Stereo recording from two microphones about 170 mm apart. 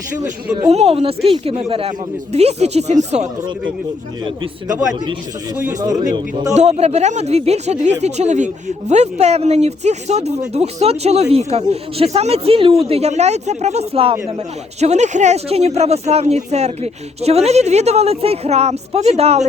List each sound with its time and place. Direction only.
0.7 s speech: 35° right (ahead or behind)
5.8 s a man's voice: 25° right (ahead or behind)
6.5 s speech: 40° right (ahead or behind)